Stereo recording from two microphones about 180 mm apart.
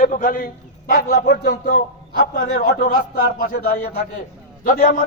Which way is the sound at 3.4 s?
55° left (ahead or behind).